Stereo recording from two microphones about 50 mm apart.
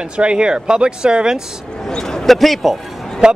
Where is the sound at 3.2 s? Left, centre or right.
Centre.